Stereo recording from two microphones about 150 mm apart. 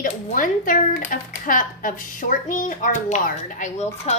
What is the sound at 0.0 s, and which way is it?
Speech, 65° left (ahead or behind).